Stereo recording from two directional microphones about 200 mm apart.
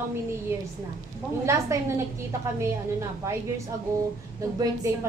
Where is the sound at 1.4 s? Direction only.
15° right (ahead or behind).